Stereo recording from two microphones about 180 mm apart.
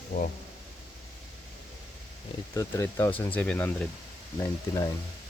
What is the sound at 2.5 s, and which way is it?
Speech, 15° left (ahead or behind).